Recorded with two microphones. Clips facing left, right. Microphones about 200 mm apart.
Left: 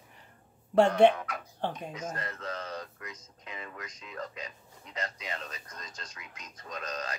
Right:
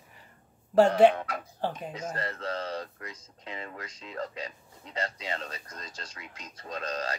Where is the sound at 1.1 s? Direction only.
30° right (ahead or behind).